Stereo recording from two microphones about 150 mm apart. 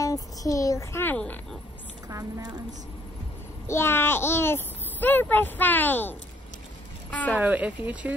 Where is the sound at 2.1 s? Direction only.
25° right (ahead or behind).